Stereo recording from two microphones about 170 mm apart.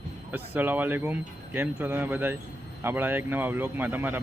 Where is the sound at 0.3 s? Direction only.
10° right (ahead or behind).